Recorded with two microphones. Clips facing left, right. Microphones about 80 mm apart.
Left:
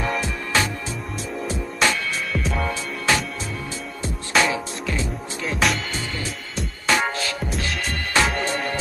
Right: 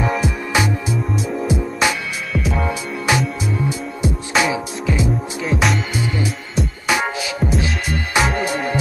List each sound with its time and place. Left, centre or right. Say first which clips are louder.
0.0 s music: right 5 dB; centre
5.4 s music: right 2 dB; centre